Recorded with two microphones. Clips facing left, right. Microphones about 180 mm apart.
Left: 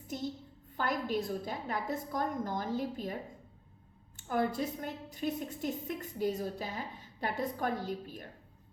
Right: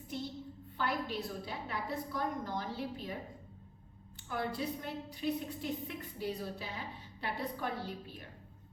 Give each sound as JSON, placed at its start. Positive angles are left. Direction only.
{"t": 0.1, "sound": "a sound", "side_deg": 45}
{"t": 0.8, "sound": "a woman's voice", "side_deg": 45}
{"t": 4.2, "sound": "a woman's voice", "side_deg": 45}